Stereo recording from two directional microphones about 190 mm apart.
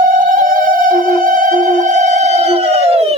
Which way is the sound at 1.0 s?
45° right (ahead or behind).